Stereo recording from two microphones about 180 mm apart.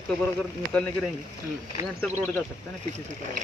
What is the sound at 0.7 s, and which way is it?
Speech, 5° left (ahead or behind).